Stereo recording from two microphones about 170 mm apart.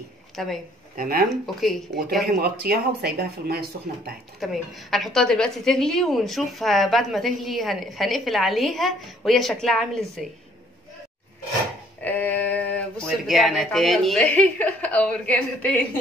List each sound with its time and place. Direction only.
0.4 s a woman's voice: centre (ahead or behind)
0.9 s speech: 60° right (ahead or behind)
1.3 s a woman's voice: centre (ahead or behind)
2.4 s speech: 70° right (ahead or behind)
4.4 s a woman's voice: centre (ahead or behind)
12.0 s a sound: 10° left (ahead or behind)
13.3 s a woman's voice: centre (ahead or behind)